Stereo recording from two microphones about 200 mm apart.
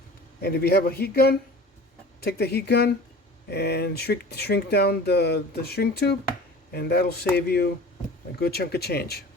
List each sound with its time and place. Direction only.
0.4 s speech: 50° left (ahead or behind)